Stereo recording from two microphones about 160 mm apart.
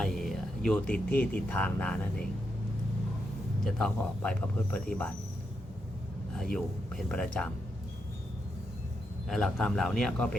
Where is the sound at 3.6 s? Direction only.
5° left (ahead or behind).